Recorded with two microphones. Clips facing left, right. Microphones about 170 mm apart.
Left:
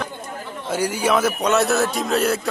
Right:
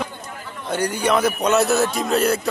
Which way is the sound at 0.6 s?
5° left (ahead or behind).